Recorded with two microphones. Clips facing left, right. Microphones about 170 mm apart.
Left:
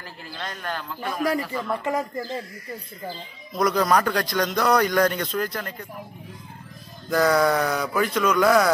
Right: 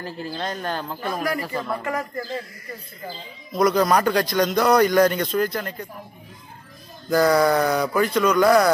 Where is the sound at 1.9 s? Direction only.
20° left (ahead or behind).